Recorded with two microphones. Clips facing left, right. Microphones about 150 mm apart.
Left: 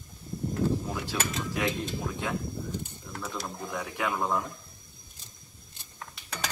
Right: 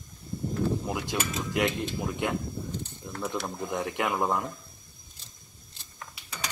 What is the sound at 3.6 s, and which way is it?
Speech, 20° right (ahead or behind).